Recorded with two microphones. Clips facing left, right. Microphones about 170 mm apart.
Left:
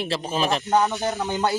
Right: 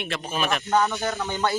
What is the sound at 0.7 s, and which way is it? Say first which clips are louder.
Speech: even; 15° left (ahead or behind).